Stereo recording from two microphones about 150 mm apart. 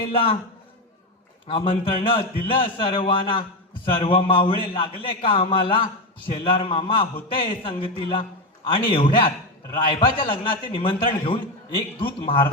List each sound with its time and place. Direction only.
0.1 s a man's voice: 35° left (ahead or behind)
1.5 s a man's voice: 35° left (ahead or behind)